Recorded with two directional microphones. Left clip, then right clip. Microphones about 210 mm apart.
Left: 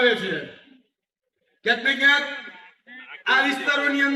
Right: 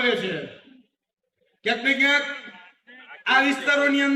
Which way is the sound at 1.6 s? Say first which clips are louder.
Left 2 dB; 50° right (ahead or behind).